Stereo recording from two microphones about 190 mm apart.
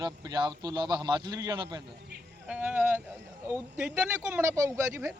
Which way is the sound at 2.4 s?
5° right (ahead or behind).